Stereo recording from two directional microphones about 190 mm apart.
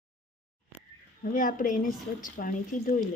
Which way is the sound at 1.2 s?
45° left (ahead or behind).